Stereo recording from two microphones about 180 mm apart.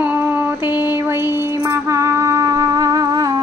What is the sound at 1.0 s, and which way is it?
Music, 10° right (ahead or behind).